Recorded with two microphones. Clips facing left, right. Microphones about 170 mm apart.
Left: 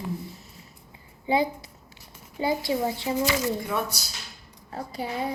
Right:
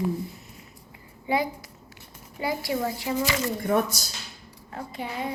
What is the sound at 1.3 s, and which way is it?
A woman's voice, 30° left (ahead or behind).